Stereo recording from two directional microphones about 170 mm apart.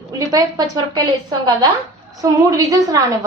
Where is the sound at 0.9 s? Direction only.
25° right (ahead or behind).